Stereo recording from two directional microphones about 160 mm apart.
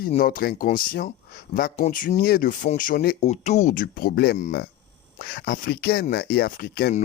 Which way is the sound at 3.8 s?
70° left (ahead or behind).